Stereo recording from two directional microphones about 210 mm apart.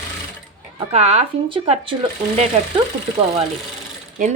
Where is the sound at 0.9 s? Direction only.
30° right (ahead or behind).